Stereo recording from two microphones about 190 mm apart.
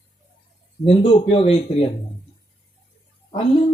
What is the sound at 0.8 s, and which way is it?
Speech, 30° left (ahead or behind).